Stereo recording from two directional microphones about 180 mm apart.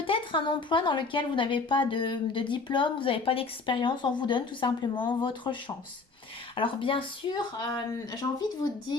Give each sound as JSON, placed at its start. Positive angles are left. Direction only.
{"t": 0.0, "sound": "speech", "side_deg": 30}